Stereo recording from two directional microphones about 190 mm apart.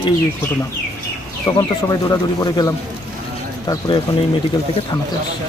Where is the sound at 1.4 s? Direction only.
20° left (ahead or behind).